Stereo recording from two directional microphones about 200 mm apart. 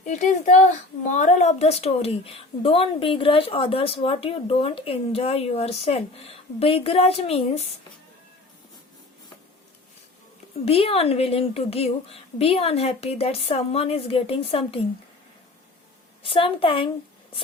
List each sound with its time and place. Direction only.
0.0 s a child's voice: 40° left (ahead or behind)
10.7 s a woman's voice: 30° left (ahead or behind)
16.2 s a woman's voice: 25° left (ahead or behind)